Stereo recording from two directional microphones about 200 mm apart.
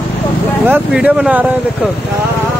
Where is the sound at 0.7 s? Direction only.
5° right (ahead or behind).